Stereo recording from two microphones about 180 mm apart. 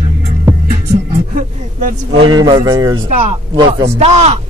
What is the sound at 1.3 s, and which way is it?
Speech, 45° right (ahead or behind).